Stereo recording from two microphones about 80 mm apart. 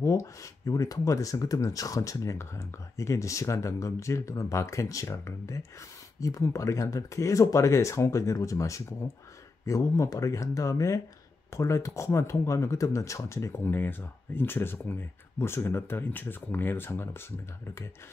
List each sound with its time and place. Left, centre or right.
0.0 s speech: left
13.6 s speech: left